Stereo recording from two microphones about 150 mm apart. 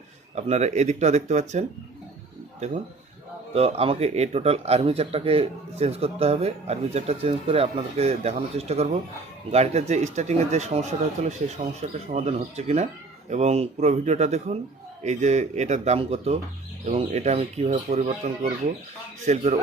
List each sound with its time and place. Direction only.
0.3 s speech: 45° right (ahead or behind)
3.5 s speech: 40° right (ahead or behind)